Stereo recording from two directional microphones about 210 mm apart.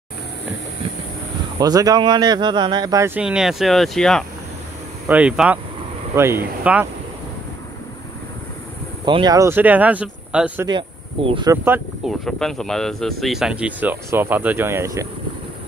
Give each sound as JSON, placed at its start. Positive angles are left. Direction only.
{"t": 1.6, "sound": "speech", "side_deg": -15}
{"t": 3.2, "sound": "speech", "side_deg": -5}
{"t": 9.0, "sound": "speech", "side_deg": -20}
{"t": 10.7, "sound": "speech", "side_deg": -25}
{"t": 11.5, "sound": "speech", "side_deg": -10}
{"t": 12.3, "sound": "speech", "side_deg": 0}